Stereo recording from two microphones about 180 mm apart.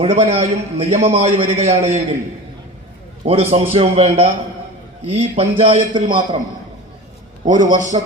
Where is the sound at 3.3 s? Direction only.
35° right (ahead or behind).